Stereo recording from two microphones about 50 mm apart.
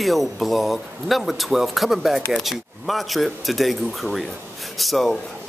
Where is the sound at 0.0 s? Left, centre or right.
Centre.